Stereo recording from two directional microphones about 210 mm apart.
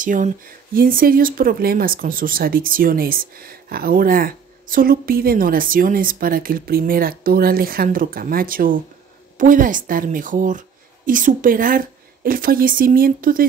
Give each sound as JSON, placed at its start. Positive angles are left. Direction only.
{"t": 0.0, "sound": "a woman's voice", "side_deg": -40}